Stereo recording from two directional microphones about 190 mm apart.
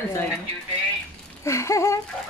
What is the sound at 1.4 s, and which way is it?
Speech, 15° left (ahead or behind).